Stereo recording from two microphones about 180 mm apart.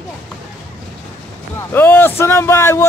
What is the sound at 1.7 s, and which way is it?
A man's voice, 10° left (ahead or behind).